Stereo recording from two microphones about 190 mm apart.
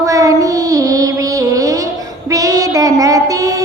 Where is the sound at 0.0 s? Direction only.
15° right (ahead or behind).